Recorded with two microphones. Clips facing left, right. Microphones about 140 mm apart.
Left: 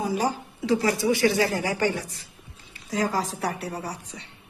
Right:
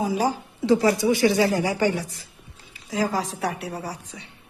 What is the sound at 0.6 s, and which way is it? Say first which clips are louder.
Speech: right 4 dB; 30° right (ahead or behind).